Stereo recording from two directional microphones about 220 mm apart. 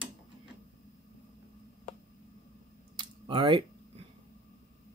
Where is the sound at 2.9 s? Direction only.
20° right (ahead or behind).